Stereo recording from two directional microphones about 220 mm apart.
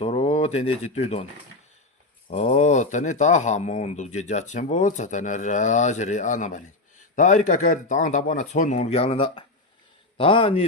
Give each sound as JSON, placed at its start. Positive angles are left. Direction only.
{"t": 0.0, "sound": "a man's voice", "side_deg": 30}